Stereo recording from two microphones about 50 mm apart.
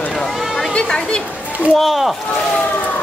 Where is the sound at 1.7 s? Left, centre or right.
Centre.